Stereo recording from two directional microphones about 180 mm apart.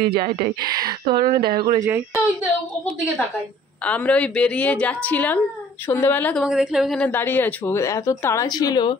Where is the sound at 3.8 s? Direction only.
5° left (ahead or behind).